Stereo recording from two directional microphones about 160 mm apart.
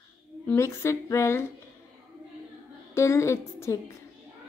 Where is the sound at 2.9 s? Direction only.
15° left (ahead or behind).